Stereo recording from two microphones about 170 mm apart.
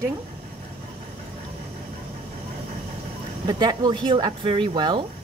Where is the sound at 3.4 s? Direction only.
25° right (ahead or behind).